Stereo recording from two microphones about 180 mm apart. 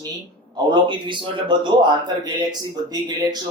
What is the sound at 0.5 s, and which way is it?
A man's voice, 25° right (ahead or behind).